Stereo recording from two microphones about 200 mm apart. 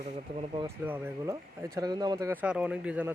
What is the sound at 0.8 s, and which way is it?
A man's voice, 10° right (ahead or behind).